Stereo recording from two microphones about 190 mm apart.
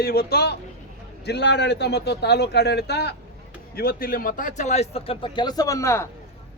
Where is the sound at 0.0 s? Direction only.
55° left (ahead or behind).